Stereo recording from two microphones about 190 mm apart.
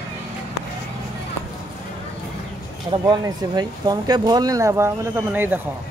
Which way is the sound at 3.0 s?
20° right (ahead or behind).